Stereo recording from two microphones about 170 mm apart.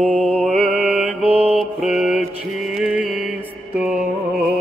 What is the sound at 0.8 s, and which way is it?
Mantra, 10° right (ahead or behind).